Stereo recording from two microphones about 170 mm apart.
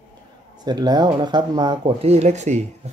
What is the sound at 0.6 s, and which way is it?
Speech, 25° right (ahead or behind).